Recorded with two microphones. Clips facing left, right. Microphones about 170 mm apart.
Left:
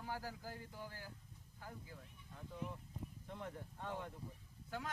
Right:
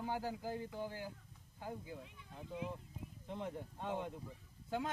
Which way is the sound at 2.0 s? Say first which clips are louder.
Right 4 dB; 90° right.